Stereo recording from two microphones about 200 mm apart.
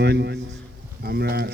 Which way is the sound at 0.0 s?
55° right (ahead or behind).